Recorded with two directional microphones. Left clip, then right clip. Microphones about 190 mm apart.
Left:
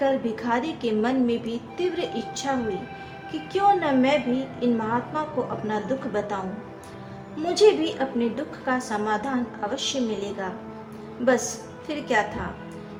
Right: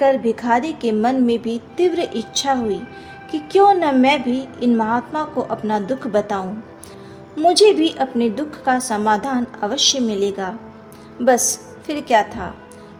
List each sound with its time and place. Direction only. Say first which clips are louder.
0.0 s a woman's voice: right 8 dB; 40° right (ahead or behind)